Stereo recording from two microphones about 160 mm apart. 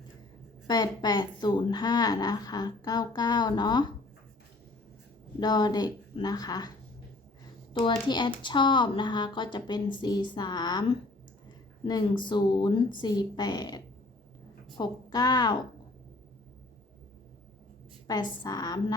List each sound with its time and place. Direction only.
0.7 s a woman's voice: 25° left (ahead or behind)
5.4 s a woman's voice: 25° left (ahead or behind)
18.1 s a woman's voice: 25° left (ahead or behind)